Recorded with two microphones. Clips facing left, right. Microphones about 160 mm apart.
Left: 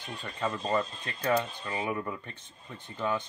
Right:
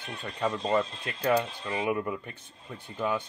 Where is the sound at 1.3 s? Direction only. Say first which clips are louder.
Right 2 dB; 10° right (ahead or behind).